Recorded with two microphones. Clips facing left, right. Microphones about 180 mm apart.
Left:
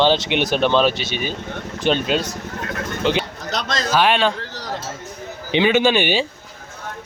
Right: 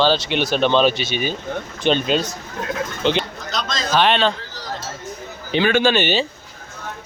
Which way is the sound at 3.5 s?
65° left (ahead or behind).